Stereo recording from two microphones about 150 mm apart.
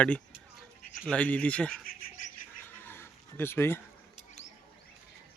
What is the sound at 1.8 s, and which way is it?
Bird, 70° left (ahead or behind).